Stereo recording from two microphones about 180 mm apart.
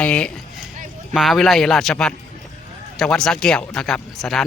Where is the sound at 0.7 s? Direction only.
45° right (ahead or behind).